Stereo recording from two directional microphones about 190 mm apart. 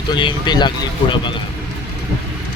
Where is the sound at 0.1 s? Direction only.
25° left (ahead or behind).